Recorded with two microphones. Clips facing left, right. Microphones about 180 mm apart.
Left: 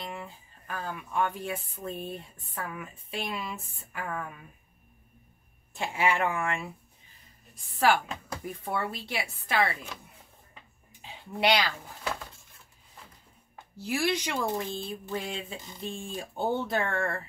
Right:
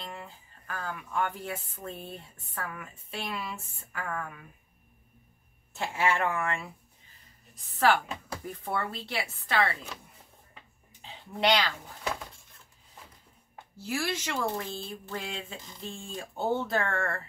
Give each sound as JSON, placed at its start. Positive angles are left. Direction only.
{"t": 0.3, "sound": "speech", "side_deg": 15}
{"t": 5.7, "sound": "speech", "side_deg": 15}
{"t": 7.9, "sound": "speech", "side_deg": 10}
{"t": 10.9, "sound": "a sound", "side_deg": 10}
{"t": 13.7, "sound": "speech", "side_deg": 15}